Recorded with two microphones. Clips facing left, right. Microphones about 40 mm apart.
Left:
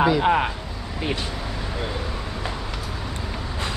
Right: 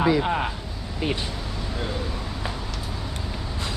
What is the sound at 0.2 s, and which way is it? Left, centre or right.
Speech, left.